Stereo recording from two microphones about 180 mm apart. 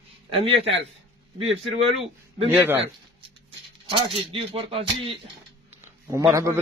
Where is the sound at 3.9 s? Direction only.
30° right (ahead or behind).